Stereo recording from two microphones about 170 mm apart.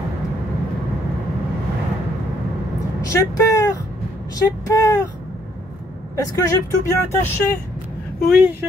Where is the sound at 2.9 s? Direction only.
20° left (ahead or behind).